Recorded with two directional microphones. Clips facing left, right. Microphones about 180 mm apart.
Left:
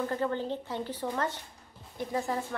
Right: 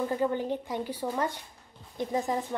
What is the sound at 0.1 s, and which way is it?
Speech, 15° right (ahead or behind).